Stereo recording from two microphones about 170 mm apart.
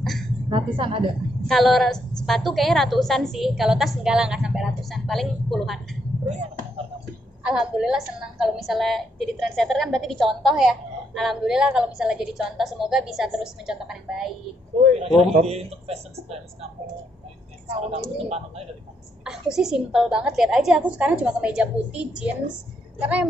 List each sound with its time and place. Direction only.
0.5 s a woman's voice: 30° right (ahead or behind)
1.5 s a woman's voice: centre (ahead or behind)
7.4 s a woman's voice: 5° right (ahead or behind)
14.8 s speech: 40° right (ahead or behind)
17.9 s speech: 35° right (ahead or behind)
19.5 s a woman's voice: 5° right (ahead or behind)